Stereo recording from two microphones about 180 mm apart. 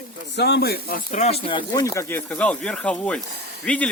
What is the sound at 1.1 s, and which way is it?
Speech, 35° left (ahead or behind).